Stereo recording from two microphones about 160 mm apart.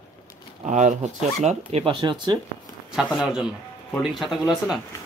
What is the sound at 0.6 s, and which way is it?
Speech, 50° right (ahead or behind).